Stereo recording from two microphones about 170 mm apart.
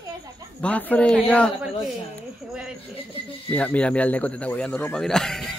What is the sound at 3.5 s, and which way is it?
A man's voice, 10° left (ahead or behind).